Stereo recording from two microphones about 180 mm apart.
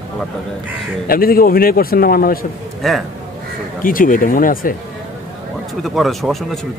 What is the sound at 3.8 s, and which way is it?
Speech, 50° left (ahead or behind).